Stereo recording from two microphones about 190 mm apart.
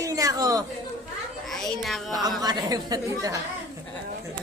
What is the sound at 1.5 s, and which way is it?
Speech, centre (ahead or behind).